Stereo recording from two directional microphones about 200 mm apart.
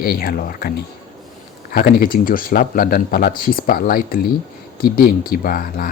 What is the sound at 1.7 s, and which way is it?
Speech, 45° left (ahead or behind).